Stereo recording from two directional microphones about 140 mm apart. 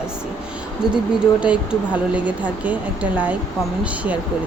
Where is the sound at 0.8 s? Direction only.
5° right (ahead or behind).